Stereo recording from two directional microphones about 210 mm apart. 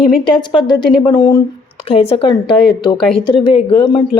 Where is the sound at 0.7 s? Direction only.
20° left (ahead or behind).